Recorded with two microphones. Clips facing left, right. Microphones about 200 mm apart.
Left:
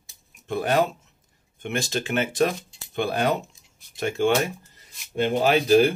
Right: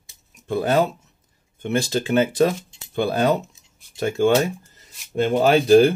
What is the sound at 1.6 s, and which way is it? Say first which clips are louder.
Speech: right 5 dB; 35° right (ahead or behind).